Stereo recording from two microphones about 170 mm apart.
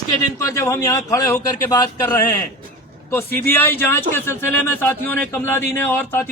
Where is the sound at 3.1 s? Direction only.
15° left (ahead or behind).